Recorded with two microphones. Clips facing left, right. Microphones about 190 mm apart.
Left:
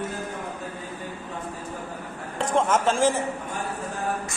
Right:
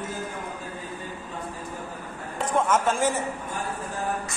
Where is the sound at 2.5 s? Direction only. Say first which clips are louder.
Left 1 dB; 30° left (ahead or behind).